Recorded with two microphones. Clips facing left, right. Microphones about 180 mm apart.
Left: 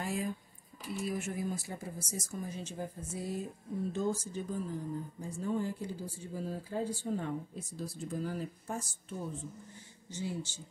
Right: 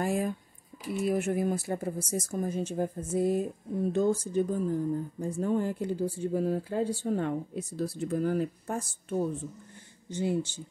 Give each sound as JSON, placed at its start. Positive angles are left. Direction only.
{"t": 0.0, "sound": "speech", "side_deg": -50}